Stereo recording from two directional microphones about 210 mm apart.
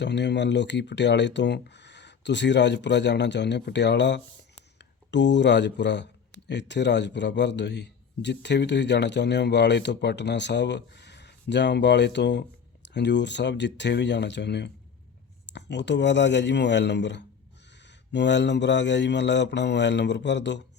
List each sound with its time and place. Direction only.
0.0 s speech: 55° left (ahead or behind)